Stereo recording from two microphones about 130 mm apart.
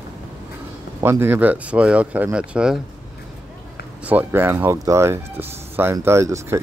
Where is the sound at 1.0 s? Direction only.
15° right (ahead or behind).